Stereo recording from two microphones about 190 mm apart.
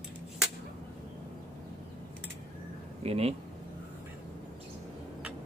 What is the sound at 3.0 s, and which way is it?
Speech, 30° right (ahead or behind).